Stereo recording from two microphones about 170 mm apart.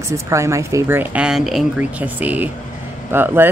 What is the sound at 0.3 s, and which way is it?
Speech, 15° right (ahead or behind).